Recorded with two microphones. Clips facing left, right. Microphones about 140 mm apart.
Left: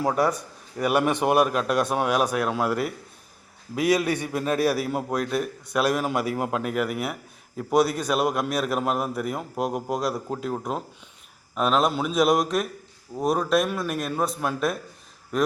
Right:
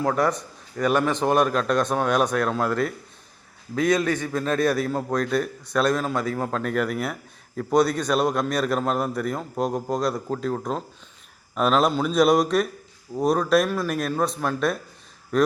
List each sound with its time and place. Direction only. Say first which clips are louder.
0.0 s a man's voice: right 1 dB; 10° left (ahead or behind)